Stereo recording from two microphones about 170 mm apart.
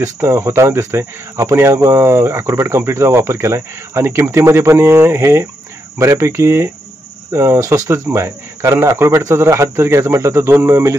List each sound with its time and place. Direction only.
0.0 s speech: 15° right (ahead or behind)